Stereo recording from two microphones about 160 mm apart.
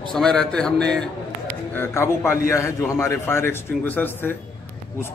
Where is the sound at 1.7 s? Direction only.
15° left (ahead or behind).